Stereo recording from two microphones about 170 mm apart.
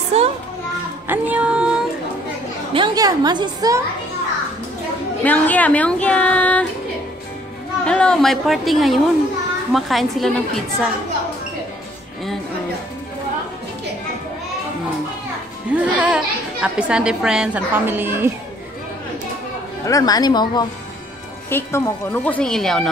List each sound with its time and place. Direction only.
0.1 s children playing: 40° right (ahead or behind)
1.0 s child singing: 10° right (ahead or behind)
2.7 s a woman's voice: 25° right (ahead or behind)
5.2 s a child's voice: 10° left (ahead or behind)
7.8 s a woman's voice: 5° left (ahead or behind)
15.7 s a child's voice: 5° right (ahead or behind)
19.9 s a woman's voice: 20° left (ahead or behind)
21.5 s a woman's voice: 15° left (ahead or behind)